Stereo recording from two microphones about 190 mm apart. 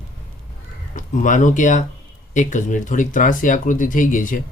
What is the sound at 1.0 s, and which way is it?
Speech, 40° left (ahead or behind).